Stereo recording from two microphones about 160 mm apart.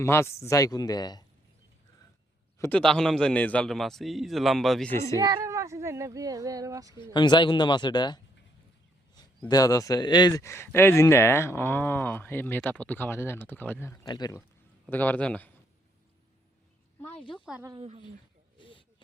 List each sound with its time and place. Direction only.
0.0 s speech: 15° left (ahead or behind)
2.6 s a man's voice: 10° left (ahead or behind)
4.9 s speech: 20° left (ahead or behind)
5.2 s speech: 20° right (ahead or behind)
6.9 s speech: 30° left (ahead or behind)
9.5 s speech: 20° left (ahead or behind)
14.8 s speech: 10° left (ahead or behind)
17.0 s a sound: 10° left (ahead or behind)
17.7 s a woman's voice: 35° right (ahead or behind)